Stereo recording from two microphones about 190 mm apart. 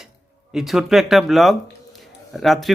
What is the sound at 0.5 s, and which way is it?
Speech, centre (ahead or behind).